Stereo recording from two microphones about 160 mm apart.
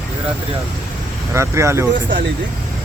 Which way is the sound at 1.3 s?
15° right (ahead or behind).